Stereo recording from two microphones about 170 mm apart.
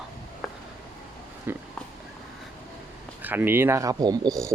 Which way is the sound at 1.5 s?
10° right (ahead or behind).